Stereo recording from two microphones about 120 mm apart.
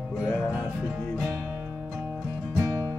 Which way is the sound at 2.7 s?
20° right (ahead or behind).